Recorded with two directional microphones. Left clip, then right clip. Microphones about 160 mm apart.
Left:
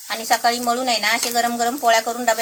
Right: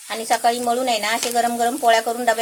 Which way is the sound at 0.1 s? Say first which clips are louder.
Even; 40° right (ahead or behind).